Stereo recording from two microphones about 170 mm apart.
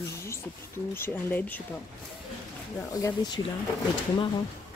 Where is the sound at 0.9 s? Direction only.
10° left (ahead or behind).